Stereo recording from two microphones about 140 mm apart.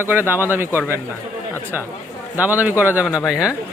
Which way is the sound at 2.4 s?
10° right (ahead or behind).